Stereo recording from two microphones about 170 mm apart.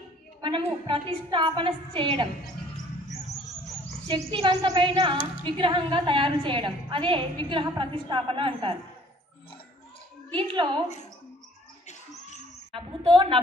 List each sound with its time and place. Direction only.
0.4 s a sound: 25° right (ahead or behind)
0.8 s a woman's voice: 30° right (ahead or behind)
4.1 s cricket: 30° right (ahead or behind)
5.4 s a woman's voice: 30° right (ahead or behind)
10.3 s a woman's voice: 30° right (ahead or behind)
12.7 s cricket: 30° right (ahead or behind)